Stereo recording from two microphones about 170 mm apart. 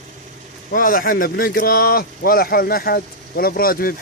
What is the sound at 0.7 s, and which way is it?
Speech, 55° left (ahead or behind).